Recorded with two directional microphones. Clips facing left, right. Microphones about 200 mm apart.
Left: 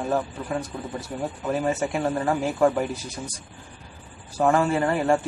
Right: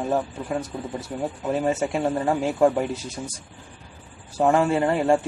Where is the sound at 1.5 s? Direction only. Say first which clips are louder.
Right 1 dB; 25° right (ahead or behind).